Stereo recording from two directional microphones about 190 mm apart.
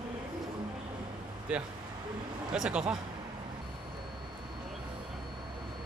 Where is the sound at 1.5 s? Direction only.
5° right (ahead or behind).